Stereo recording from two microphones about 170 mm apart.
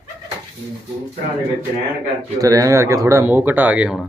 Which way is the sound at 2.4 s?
20° right (ahead or behind).